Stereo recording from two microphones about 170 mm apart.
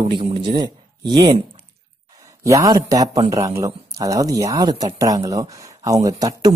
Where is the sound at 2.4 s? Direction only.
20° right (ahead or behind).